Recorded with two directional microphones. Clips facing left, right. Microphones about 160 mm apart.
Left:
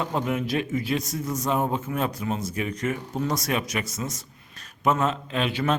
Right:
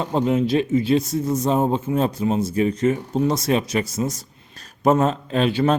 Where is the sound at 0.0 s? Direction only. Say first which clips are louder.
Right 6 dB; 30° right (ahead or behind).